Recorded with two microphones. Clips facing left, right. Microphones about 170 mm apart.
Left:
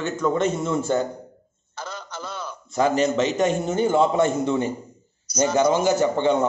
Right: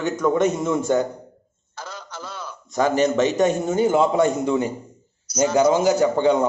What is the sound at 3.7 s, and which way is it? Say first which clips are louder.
A man's voice: right 1 dB; 15° right (ahead or behind).